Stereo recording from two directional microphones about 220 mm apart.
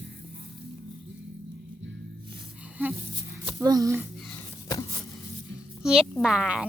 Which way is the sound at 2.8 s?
10° right (ahead or behind).